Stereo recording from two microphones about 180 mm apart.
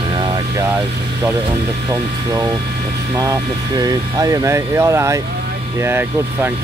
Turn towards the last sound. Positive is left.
turn(degrees=-15)  # may be behind; listen again after turning